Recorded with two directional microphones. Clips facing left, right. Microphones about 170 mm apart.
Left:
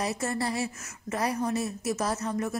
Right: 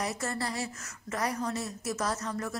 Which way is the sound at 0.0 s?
25° left (ahead or behind).